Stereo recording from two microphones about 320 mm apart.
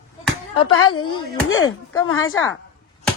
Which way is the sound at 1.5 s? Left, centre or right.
Left.